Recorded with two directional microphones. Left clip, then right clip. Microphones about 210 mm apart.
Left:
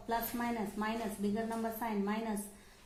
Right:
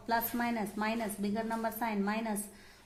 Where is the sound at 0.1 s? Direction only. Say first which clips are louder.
Right 4 dB; 45° right (ahead or behind).